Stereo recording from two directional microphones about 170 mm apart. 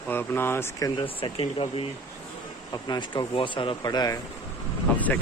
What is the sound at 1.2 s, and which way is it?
Speech, 30° left (ahead or behind).